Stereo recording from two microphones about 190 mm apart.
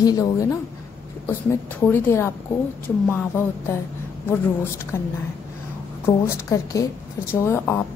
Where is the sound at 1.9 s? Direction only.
10° left (ahead or behind).